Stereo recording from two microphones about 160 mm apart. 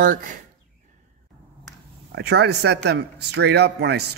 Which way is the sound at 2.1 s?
90° right.